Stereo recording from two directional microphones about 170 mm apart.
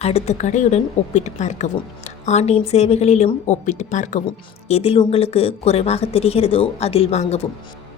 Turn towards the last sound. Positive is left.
turn(degrees=40)  # may be behind; listen again after turning